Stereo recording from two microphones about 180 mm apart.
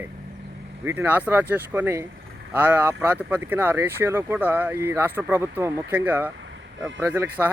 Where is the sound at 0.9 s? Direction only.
10° right (ahead or behind).